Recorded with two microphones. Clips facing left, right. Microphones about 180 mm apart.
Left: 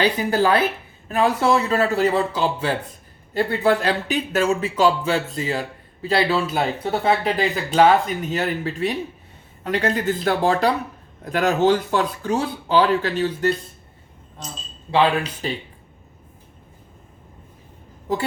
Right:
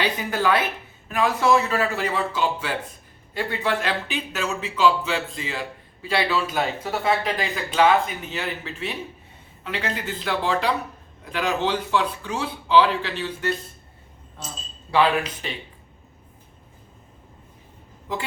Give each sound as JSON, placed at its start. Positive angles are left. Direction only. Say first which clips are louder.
{"t": 0.0, "sound": "a man's voice", "louder": "left 5 dB", "side_deg": 35}
{"t": 14.8, "sound": "a man's voice", "louder": "left 2 dB", "side_deg": 30}